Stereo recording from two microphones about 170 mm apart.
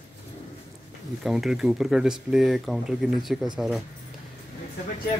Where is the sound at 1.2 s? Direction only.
Centre (ahead or behind).